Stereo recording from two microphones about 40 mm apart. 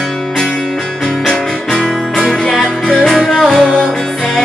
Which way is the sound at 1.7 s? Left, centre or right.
Centre.